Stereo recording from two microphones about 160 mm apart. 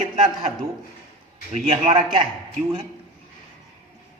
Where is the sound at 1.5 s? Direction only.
40° right (ahead or behind).